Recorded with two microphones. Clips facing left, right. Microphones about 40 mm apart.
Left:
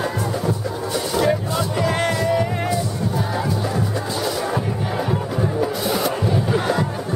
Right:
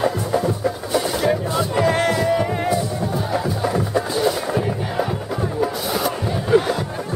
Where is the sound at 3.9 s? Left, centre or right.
Centre.